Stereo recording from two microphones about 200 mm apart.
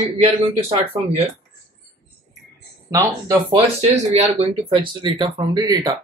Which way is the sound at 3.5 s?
30° right (ahead or behind).